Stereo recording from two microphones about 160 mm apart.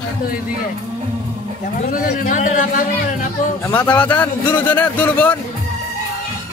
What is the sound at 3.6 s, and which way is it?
A man's voice, 15° left (ahead or behind).